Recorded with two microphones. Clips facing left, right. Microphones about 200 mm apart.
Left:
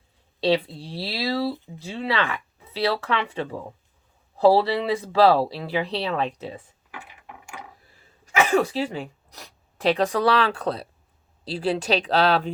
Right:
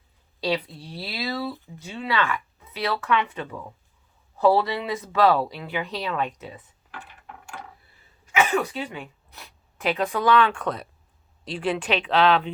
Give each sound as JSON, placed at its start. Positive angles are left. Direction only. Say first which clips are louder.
{"t": 0.4, "sound": "speech", "louder": "left 5 dB", "side_deg": 30}
{"t": 1.5, "sound": "speech", "louder": "left 3 dB", "side_deg": 20}
{"t": 1.8, "sound": "speech", "louder": "even", "side_deg": 30}
{"t": 6.9, "sound": "a sound", "louder": "even", "side_deg": 10}
{"t": 8.4, "sound": "speech", "louder": "left 3 dB", "side_deg": 35}